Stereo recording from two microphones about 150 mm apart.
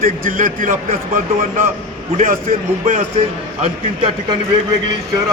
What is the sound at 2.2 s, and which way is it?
Speech, 65° right (ahead or behind).